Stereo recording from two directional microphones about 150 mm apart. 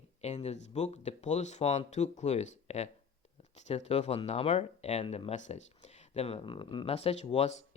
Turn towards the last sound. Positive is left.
turn(degrees=45)  # may be behind; listen again after turning